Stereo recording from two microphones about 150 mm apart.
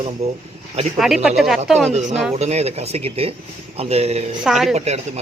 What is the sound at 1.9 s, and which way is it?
Speech, 45° right (ahead or behind).